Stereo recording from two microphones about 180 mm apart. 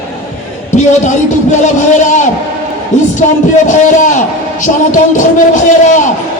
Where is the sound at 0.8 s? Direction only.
40° left (ahead or behind).